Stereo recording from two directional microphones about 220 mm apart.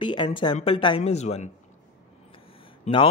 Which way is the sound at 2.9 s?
30° left (ahead or behind).